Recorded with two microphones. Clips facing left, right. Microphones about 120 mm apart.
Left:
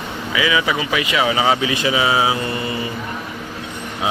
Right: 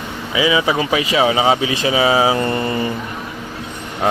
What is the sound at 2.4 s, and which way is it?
Speech, 45° right (ahead or behind).